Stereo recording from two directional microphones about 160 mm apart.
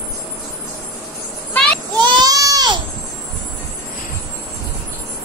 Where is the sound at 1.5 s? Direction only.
10° left (ahead or behind).